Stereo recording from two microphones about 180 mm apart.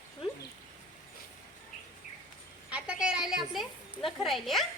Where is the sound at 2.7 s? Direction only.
5° right (ahead or behind).